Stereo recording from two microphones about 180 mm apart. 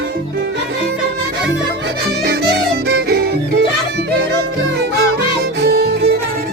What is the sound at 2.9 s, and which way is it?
Music, 70° right (ahead or behind).